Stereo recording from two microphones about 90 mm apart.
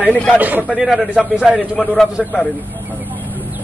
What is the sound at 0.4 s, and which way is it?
Speech, 20° right (ahead or behind).